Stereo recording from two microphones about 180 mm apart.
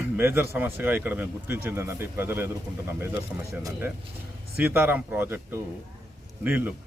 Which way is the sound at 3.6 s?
15° right (ahead or behind).